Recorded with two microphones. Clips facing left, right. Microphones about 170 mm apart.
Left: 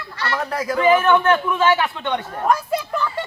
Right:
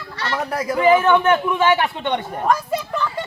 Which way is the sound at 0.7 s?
20° right (ahead or behind).